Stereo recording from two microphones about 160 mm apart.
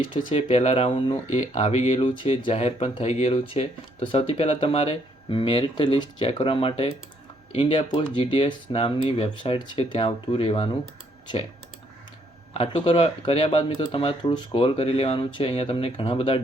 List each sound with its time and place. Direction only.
0.3 s speech: 40° left (ahead or behind)
12.5 s speech: 35° left (ahead or behind)